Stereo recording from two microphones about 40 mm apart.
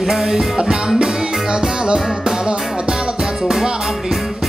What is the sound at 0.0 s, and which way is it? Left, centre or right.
Music, centre.